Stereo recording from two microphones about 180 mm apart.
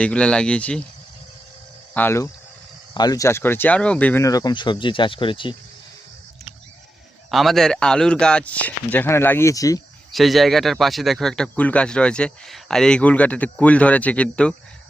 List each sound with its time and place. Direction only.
0.0 s speech: 5° left (ahead or behind)
1.9 s speech: 10° left (ahead or behind); by 5.5 s 30° left (ahead or behind)
7.3 s a man's voice: centre (ahead or behind); by 9.8 s 20° left (ahead or behind)
10.1 s speech: centre (ahead or behind)